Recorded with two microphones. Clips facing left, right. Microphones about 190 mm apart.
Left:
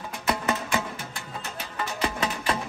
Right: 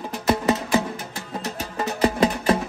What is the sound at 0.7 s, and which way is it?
Music, 35° right (ahead or behind).